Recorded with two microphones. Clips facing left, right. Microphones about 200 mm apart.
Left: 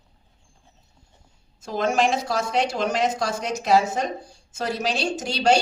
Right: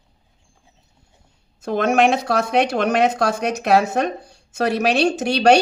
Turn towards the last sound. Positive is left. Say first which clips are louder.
# right 6 dB
turn(degrees=-65)  # may be behind; listen again after turning